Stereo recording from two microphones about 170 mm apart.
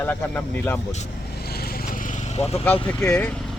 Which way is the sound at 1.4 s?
65° left (ahead or behind).